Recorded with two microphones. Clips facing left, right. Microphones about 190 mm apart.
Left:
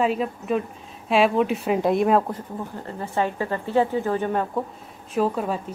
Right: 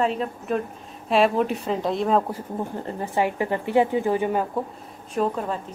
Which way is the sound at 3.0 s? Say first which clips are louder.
Right 1 dB; 15° right (ahead or behind).